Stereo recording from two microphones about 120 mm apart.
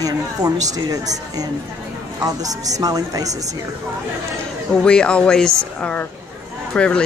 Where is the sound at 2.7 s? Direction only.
30° right (ahead or behind).